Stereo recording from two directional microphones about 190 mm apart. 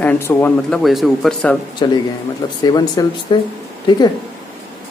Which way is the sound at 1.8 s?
25° left (ahead or behind).